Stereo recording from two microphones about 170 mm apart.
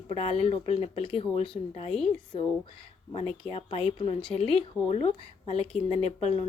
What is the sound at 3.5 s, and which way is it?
Speech, 35° left (ahead or behind).